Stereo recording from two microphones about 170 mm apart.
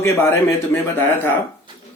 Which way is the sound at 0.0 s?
15° left (ahead or behind).